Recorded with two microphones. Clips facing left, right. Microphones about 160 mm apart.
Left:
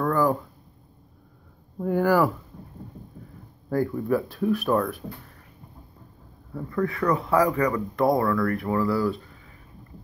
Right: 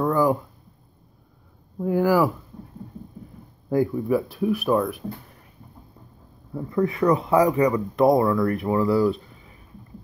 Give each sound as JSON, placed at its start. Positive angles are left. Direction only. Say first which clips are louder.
{"t": 0.0, "sound": "a sound", "louder": "right 2 dB", "side_deg": -10}
{"t": 1.8, "sound": "speech", "louder": "right 1 dB", "side_deg": -5}
{"t": 3.7, "sound": "speech", "louder": "right 3 dB", "side_deg": -10}
{"t": 6.5, "sound": "speech", "louder": "right 3 dB", "side_deg": -20}